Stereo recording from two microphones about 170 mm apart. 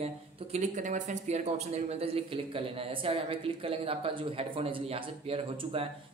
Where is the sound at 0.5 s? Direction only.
45° right (ahead or behind).